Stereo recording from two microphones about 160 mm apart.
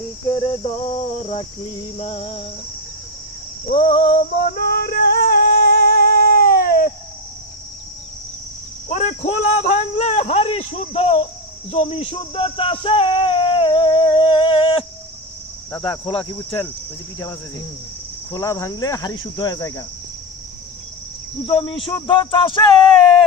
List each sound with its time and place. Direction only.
0.3 s speech: 35° left (ahead or behind)
3.8 s speech: 35° left (ahead or behind)
4.4 s music: 75° left (ahead or behind)
8.9 s speech: 45° left (ahead or behind)
11.7 s a sound: 40° left (ahead or behind)
15.8 s speech: 30° left (ahead or behind)
18.3 s cricket: 20° left (ahead or behind)
21.4 s speech: 30° left (ahead or behind)